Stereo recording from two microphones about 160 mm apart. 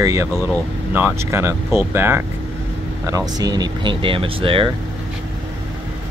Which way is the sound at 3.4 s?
25° right (ahead or behind).